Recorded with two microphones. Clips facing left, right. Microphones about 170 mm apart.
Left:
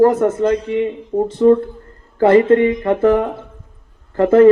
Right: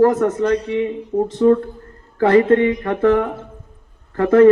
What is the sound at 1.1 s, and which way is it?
A man's voice, 30° left (ahead or behind).